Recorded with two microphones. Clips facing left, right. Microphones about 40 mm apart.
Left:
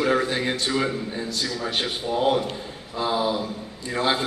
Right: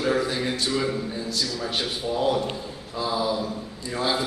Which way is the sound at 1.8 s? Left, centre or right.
Left.